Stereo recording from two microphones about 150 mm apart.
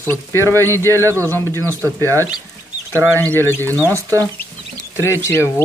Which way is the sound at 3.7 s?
20° right (ahead or behind).